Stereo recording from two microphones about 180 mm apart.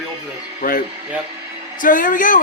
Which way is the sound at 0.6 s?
50° left (ahead or behind).